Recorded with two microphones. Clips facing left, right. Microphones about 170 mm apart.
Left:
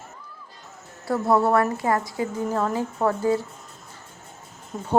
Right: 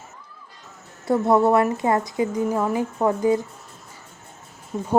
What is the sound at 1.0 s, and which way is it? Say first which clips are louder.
A woman's voice: right 3 dB; 20° right (ahead or behind).